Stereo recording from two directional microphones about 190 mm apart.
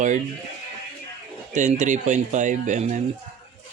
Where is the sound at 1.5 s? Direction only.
40° right (ahead or behind).